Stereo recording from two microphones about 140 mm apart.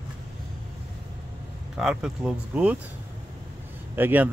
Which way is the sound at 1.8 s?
5° right (ahead or behind).